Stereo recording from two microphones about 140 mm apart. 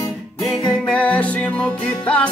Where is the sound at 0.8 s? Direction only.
10° left (ahead or behind).